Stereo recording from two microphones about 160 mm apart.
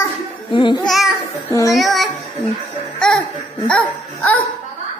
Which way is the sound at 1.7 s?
Centre (ahead or behind).